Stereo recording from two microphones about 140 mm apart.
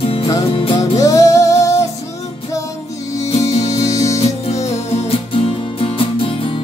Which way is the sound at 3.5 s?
50° left (ahead or behind).